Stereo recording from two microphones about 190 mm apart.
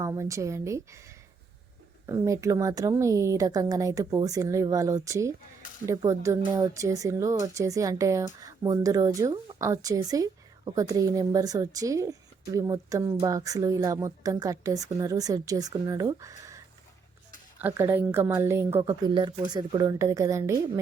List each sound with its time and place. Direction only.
0.0 s a woman's voice: 15° right (ahead or behind)
17.6 s a woman's voice: 10° right (ahead or behind)